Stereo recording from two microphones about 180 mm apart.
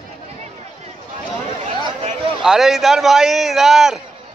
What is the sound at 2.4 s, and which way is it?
Speech, 5° right (ahead or behind).